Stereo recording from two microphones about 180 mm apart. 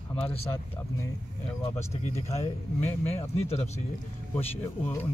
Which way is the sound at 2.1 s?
35° left (ahead or behind).